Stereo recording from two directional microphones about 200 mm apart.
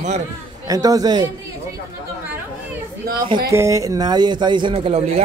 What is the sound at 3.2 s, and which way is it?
Speech, 20° right (ahead or behind).